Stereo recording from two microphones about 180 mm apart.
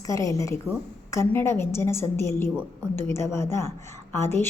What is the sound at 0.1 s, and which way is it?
A woman's voice, 20° left (ahead or behind).